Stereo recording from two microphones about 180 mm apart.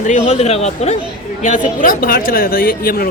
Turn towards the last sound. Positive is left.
turn(degrees=55)  # may be behind; listen again after turning